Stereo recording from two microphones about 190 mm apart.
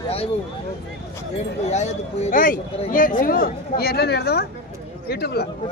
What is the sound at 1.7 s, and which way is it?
Speech, 35° left (ahead or behind).